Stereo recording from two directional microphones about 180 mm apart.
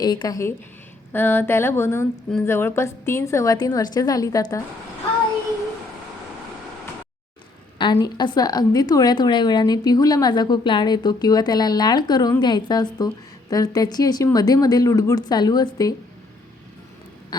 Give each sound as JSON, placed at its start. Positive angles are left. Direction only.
{"t": 0.0, "sound": "a woman's voice", "side_deg": 25}
{"t": 1.1, "sound": "a sound", "side_deg": 10}
{"t": 2.4, "sound": "a woman's voice", "side_deg": 15}
{"t": 7.8, "sound": "a woman's voice", "side_deg": 25}